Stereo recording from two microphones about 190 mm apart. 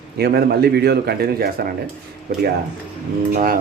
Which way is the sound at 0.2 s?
55° right (ahead or behind).